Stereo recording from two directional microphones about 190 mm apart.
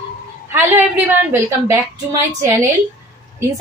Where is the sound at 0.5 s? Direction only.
10° right (ahead or behind).